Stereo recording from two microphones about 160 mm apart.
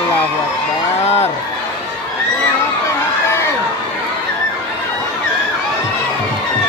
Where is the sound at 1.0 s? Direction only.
40° left (ahead or behind).